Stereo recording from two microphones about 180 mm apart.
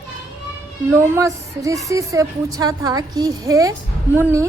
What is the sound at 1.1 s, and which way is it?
A woman's voice, 15° right (ahead or behind).